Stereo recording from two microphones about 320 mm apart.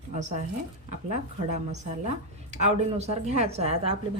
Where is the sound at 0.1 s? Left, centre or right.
Right.